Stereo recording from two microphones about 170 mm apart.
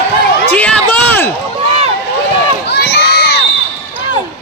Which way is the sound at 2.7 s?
80° left.